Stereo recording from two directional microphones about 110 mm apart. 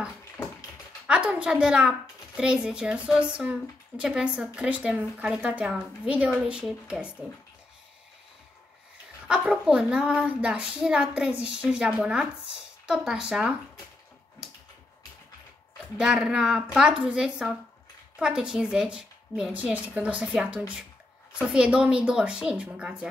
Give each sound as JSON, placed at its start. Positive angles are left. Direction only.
{"t": 0.4, "sound": "a sound", "side_deg": 15}
{"t": 1.0, "sound": "speech", "side_deg": -10}
{"t": 9.3, "sound": "speech", "side_deg": -10}
{"t": 16.0, "sound": "speech", "side_deg": -5}